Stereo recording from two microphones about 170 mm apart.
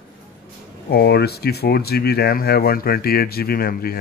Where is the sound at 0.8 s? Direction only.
70° left (ahead or behind).